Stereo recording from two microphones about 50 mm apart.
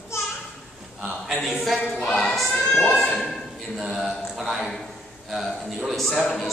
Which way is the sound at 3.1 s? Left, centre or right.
Centre.